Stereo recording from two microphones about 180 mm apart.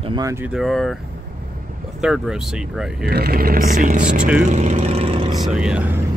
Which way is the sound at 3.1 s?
60° right (ahead or behind).